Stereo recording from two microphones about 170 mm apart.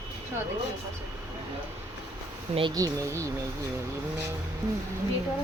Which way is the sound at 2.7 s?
20° right (ahead or behind).